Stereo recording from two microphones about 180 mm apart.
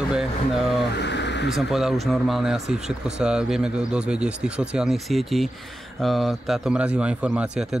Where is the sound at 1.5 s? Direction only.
Centre (ahead or behind).